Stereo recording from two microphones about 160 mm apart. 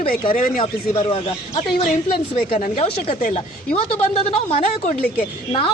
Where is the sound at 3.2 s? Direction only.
55° left (ahead or behind).